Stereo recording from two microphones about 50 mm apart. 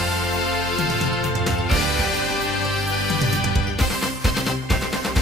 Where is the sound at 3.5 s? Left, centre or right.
Centre.